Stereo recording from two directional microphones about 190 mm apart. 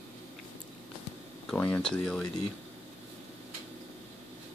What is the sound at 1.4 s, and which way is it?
Speech, 5° left (ahead or behind).